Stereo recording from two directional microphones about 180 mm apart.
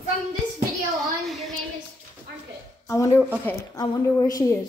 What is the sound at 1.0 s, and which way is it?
Speech, centre (ahead or behind).